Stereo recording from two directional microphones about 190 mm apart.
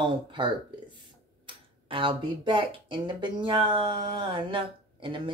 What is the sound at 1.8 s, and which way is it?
Speech, 25° right (ahead or behind).